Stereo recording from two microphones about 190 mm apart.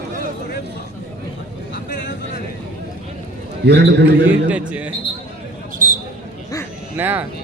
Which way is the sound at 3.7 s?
60° right (ahead or behind).